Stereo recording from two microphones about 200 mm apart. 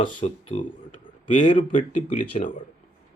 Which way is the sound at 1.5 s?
40° left (ahead or behind).